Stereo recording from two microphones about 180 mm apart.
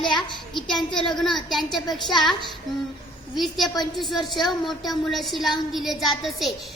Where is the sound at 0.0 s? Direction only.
25° left (ahead or behind).